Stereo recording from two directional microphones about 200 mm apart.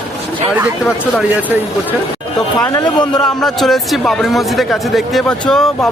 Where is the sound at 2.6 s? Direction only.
15° left (ahead or behind).